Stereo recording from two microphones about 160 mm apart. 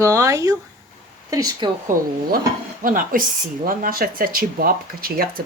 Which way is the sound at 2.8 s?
60° right (ahead or behind).